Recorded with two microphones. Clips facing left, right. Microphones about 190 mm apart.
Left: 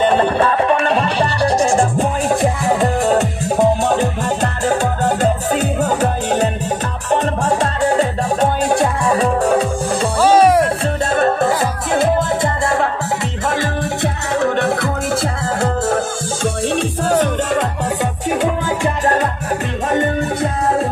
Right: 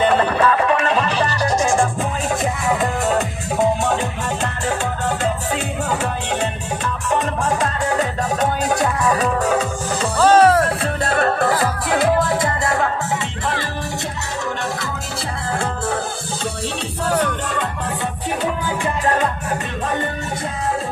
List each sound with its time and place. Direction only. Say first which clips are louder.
0.1 s music: left 2 dB; 25° left (ahead or behind)
10.2 s music: left 1 dB; 10° left (ahead or behind)
14.4 s music: left 9 dB; 60° left (ahead or behind)
17.2 s music: left 5 dB; 45° left (ahead or behind)